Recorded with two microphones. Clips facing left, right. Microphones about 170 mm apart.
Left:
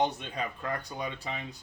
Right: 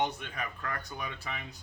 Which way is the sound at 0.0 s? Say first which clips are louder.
Left 3 dB; 25° left (ahead or behind).